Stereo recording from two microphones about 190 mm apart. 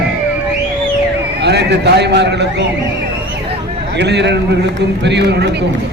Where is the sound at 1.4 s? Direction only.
60° right (ahead or behind).